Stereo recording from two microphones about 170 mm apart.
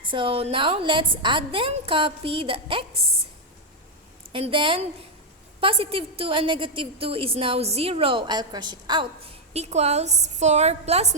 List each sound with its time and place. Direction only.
0.0 s a woman's voice: 30° right (ahead or behind)
4.3 s a woman's voice: 30° right (ahead or behind)